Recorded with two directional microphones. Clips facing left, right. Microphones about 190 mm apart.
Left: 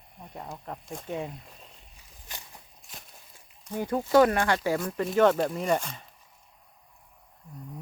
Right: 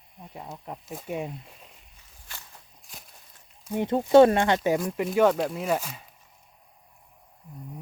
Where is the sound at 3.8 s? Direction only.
25° right (ahead or behind).